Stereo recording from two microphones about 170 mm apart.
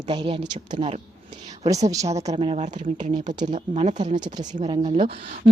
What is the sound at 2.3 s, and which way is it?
Speech, 40° right (ahead or behind).